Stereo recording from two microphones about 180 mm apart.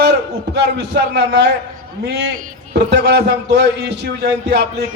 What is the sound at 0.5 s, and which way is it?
A man's voice, 70° right (ahead or behind).